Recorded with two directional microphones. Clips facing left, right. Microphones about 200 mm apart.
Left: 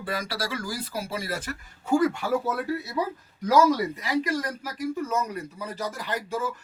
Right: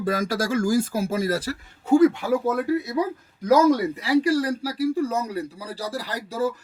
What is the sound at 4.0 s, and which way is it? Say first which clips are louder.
Speech: right 7 dB; 30° right (ahead or behind).